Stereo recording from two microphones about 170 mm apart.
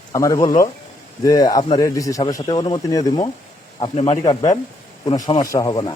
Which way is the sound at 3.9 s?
40° left (ahead or behind).